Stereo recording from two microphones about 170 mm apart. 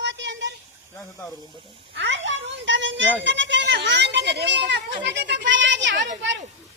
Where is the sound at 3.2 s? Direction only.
90° right.